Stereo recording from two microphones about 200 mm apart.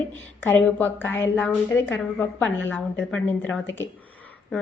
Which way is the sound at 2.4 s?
75° left (ahead or behind).